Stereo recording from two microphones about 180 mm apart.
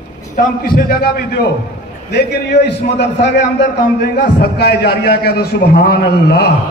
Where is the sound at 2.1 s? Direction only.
70° left (ahead or behind).